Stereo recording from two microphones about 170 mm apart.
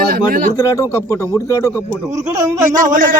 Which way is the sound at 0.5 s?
20° left (ahead or behind).